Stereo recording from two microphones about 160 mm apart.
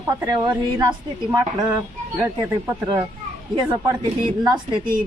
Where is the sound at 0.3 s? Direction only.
25° right (ahead or behind).